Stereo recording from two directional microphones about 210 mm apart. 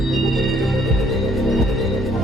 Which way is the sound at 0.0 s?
Centre (ahead or behind).